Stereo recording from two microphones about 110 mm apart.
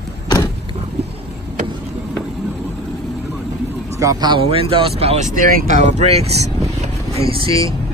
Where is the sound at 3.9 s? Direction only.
30° right (ahead or behind).